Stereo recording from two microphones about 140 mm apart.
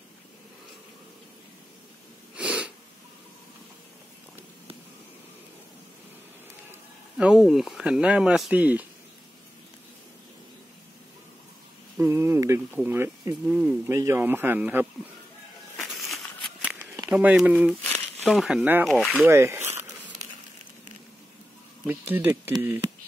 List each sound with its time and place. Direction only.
2.3 s sneeze: 10° right (ahead or behind)
7.2 s speech: 5° right (ahead or behind)
12.0 s speech: 20° right (ahead or behind)
13.5 s speech: 5° right (ahead or behind)
13.8 s speech: 20° right (ahead or behind)
15.8 s a sound: centre (ahead or behind)
16.6 s a sound: 20° right (ahead or behind)
17.1 s speech: 10° right (ahead or behind)
18.9 s speech: centre (ahead or behind)
19.1 s speech: 15° right (ahead or behind)
21.8 s speech: 15° right (ahead or behind)